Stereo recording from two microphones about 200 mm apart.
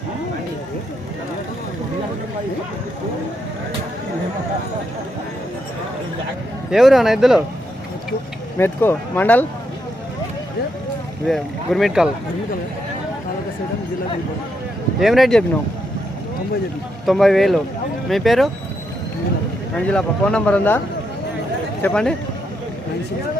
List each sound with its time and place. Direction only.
6.7 s speech: centre (ahead or behind)
8.5 s speech: 10° left (ahead or behind)
11.3 s speech: centre (ahead or behind)
14.9 s speech: centre (ahead or behind)
17.1 s speech: centre (ahead or behind)
19.7 s speech: 5° left (ahead or behind)